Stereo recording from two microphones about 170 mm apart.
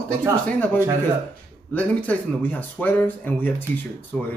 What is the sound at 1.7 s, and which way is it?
Speech, 10° left (ahead or behind).